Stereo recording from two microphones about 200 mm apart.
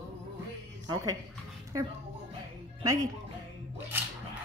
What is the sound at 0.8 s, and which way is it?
A woman's voice, 15° right (ahead or behind).